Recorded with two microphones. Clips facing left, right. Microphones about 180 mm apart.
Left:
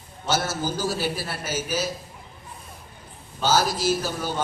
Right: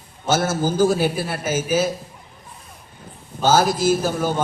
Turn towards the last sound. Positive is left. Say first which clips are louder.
# right 6 dB
turn(degrees=-50)  # may be behind; listen again after turning